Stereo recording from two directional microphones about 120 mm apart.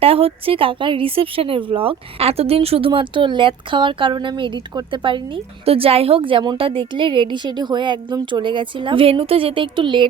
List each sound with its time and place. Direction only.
0.0 s speech: 55° right (ahead or behind)